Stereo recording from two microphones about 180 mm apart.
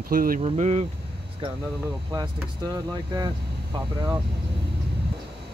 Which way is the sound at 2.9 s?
20° right (ahead or behind).